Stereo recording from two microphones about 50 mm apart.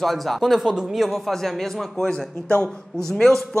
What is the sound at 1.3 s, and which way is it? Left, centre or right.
Speech, centre.